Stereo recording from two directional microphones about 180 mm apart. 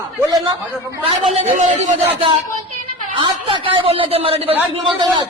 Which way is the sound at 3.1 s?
30° right (ahead or behind).